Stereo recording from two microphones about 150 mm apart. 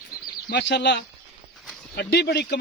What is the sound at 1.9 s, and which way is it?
Speech, 90° left.